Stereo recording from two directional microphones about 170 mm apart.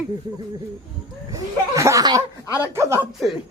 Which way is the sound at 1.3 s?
20° right (ahead or behind).